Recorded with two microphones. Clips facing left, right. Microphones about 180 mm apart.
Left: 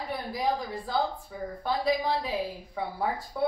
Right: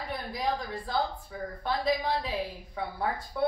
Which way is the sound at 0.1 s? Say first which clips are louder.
Left 2 dB; 5° left (ahead or behind).